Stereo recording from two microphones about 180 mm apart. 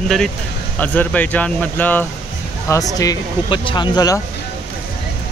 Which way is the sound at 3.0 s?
20° left (ahead or behind).